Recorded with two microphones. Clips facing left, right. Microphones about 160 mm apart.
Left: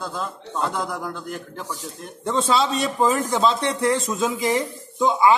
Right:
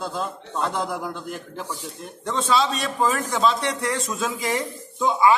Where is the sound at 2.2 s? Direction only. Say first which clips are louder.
Left 1 dB; 25° left (ahead or behind).